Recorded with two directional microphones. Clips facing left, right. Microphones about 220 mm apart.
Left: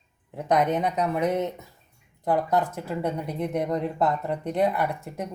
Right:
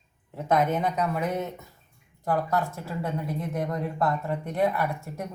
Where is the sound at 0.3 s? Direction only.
15° left (ahead or behind).